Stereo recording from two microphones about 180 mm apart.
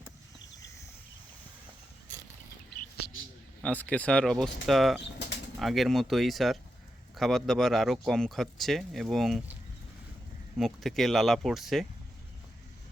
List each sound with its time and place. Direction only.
0.3 s a sound: 20° left (ahead or behind)
3.6 s speech: 10° left (ahead or behind)
10.6 s speech: centre (ahead or behind)